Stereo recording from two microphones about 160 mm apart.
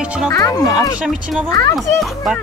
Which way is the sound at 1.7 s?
Centre (ahead or behind).